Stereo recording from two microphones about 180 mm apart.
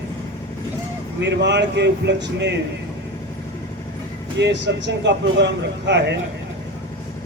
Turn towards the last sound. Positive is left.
turn(degrees=-75)  # may be behind; listen again after turning